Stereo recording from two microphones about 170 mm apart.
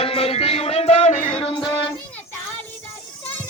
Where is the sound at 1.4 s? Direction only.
30° left (ahead or behind).